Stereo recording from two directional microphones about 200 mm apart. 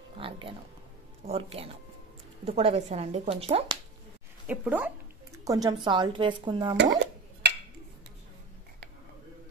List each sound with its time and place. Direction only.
0.2 s speech: 25° right (ahead or behind)
4.5 s speech: 10° right (ahead or behind)